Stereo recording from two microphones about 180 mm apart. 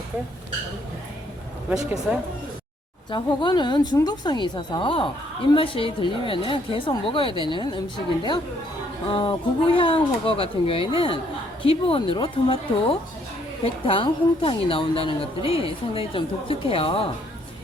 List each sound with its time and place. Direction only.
1.7 s speech: 5° right (ahead or behind)
3.1 s a woman's voice: 25° left (ahead or behind)